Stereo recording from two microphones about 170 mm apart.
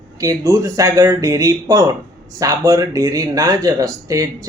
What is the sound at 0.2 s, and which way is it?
Speech, 20° right (ahead or behind).